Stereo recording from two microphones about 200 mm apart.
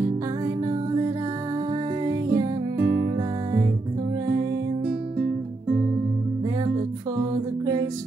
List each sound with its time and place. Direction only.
0.7 s music: 15° right (ahead or behind)
7.2 s music: 15° right (ahead or behind)